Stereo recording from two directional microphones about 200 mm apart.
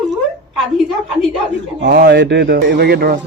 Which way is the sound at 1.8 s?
60° right (ahead or behind).